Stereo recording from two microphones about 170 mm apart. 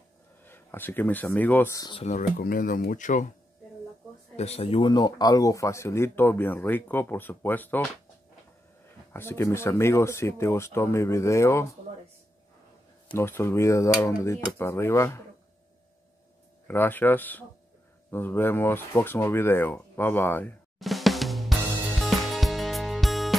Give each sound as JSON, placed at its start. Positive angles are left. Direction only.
{"t": 0.4, "sound": "speech", "side_deg": 10}
{"t": 2.0, "sound": "speech", "side_deg": 45}
{"t": 4.4, "sound": "speech", "side_deg": 35}
{"t": 9.1, "sound": "speech", "side_deg": 15}
{"t": 13.1, "sound": "speech", "side_deg": 15}
{"t": 16.6, "sound": "speech", "side_deg": 10}
{"t": 20.8, "sound": "music", "side_deg": 0}